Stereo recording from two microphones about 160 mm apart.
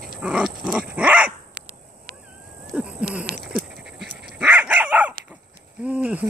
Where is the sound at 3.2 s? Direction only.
70° right (ahead or behind).